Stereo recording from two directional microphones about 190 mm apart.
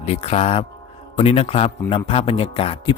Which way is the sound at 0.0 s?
35° left (ahead or behind).